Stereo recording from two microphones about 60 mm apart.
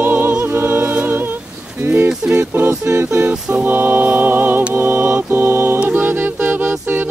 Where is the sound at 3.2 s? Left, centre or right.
Right.